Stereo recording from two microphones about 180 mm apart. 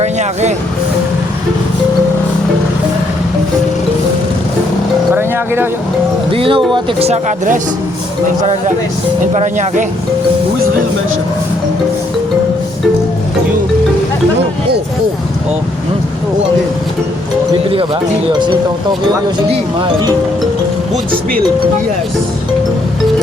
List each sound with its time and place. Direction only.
0.0 s speech: 40° right (ahead or behind)
5.1 s vehicle: 15° right (ahead or behind)
6.3 s speech: 30° right (ahead or behind)
9.2 s speech: 45° right (ahead or behind)
18.3 s speech: 25° right (ahead or behind)